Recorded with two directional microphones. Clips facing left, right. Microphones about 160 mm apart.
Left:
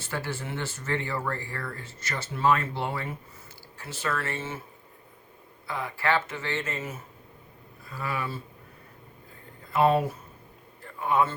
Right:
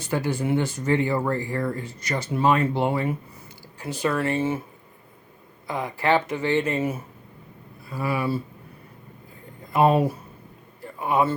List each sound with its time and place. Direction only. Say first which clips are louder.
0.0 s speech: right 8 dB; 15° right (ahead or behind)
5.6 s speech: right 5 dB; 15° right (ahead or behind)
9.7 s speech: right 3 dB; 15° right (ahead or behind)
10.8 s a sound: right 2 dB; 10° right (ahead or behind)